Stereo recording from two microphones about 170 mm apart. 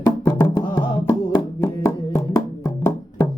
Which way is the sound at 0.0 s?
15° left (ahead or behind).